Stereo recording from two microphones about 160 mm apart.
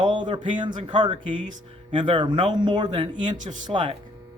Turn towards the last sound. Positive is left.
turn(degrees=-30)  # may be behind; listen again after turning